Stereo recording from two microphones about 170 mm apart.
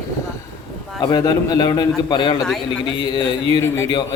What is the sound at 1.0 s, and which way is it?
A man's voice, 25° left (ahead or behind).